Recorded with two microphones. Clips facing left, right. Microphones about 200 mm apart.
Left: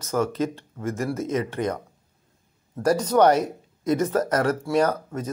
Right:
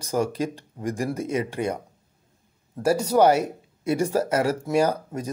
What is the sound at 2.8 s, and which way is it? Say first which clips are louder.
Speech: even; 10° right (ahead or behind).